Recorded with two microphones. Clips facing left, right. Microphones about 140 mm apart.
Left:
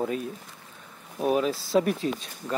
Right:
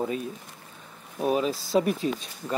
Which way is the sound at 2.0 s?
45° left (ahead or behind).